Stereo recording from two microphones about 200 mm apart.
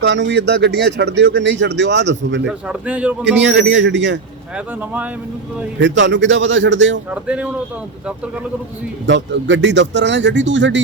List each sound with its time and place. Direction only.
0.0 s speech: 60° right (ahead or behind)
2.5 s a man's voice: 5° right (ahead or behind)
3.6 s speech: 60° right (ahead or behind)
4.5 s a man's voice: 5° right (ahead or behind)
5.8 s speech: 65° right (ahead or behind)
7.1 s speech: 5° right (ahead or behind)
9.0 s speech: 60° right (ahead or behind)